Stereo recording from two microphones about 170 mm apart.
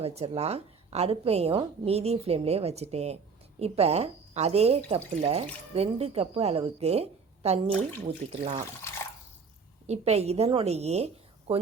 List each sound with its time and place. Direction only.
0.0 s a woman's voice: 35° right (ahead or behind)
9.8 s speech: 40° right (ahead or behind)